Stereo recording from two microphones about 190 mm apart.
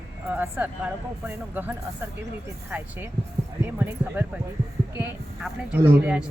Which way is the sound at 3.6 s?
10° right (ahead or behind).